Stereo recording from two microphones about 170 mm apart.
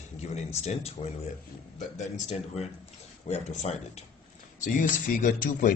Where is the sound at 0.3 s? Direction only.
40° left (ahead or behind).